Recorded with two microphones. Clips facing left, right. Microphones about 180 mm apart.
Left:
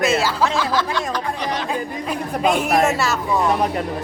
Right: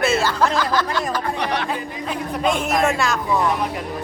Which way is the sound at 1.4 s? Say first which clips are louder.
Right 1 dB; 60° right (ahead or behind).